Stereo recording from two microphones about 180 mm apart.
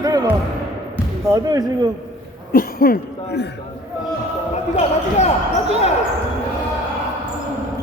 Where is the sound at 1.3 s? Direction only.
20° right (ahead or behind).